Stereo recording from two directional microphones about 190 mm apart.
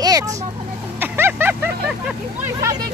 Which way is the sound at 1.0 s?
10° right (ahead or behind).